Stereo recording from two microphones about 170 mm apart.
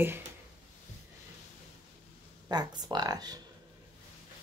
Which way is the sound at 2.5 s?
25° right (ahead or behind).